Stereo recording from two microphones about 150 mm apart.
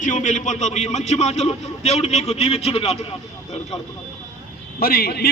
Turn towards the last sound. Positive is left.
turn(degrees=90)